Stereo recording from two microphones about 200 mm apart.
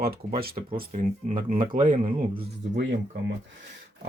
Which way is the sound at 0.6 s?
35° right (ahead or behind).